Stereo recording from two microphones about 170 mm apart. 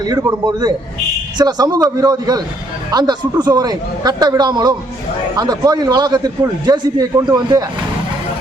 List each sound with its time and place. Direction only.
0.0 s a man's voice: 20° right (ahead or behind)